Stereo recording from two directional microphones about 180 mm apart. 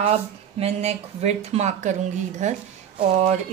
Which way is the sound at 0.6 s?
35° right (ahead or behind).